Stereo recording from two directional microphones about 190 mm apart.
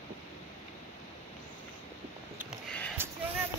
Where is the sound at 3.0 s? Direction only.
10° right (ahead or behind).